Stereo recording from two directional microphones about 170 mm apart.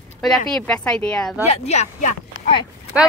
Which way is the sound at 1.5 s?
40° left (ahead or behind).